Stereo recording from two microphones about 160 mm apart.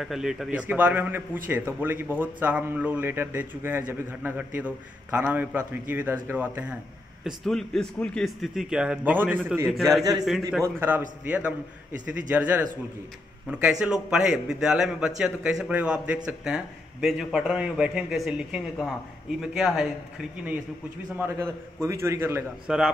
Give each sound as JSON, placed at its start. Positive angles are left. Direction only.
{"t": 0.0, "sound": "a man's voice", "side_deg": 0}
{"t": 7.2, "sound": "a man's voice", "side_deg": 0}
{"t": 9.7, "sound": "a man's voice", "side_deg": 0}
{"t": 10.8, "sound": "a man's voice", "side_deg": -10}
{"t": 21.2, "sound": "a man's voice", "side_deg": -20}
{"t": 22.7, "sound": "a man's voice", "side_deg": -5}